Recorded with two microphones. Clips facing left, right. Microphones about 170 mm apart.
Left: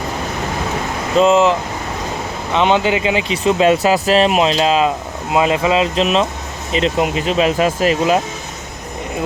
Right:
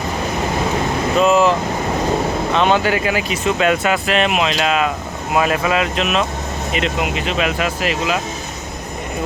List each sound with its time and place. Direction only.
1.2 s speech: 25° left (ahead or behind); by 8.2 s 40° left (ahead or behind)